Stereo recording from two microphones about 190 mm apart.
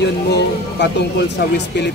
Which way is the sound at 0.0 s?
65° left (ahead or behind).